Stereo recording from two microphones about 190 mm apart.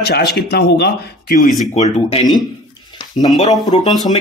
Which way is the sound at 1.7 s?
35° left (ahead or behind).